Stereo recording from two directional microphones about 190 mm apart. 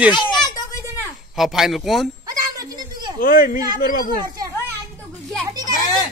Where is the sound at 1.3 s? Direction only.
Centre (ahead or behind).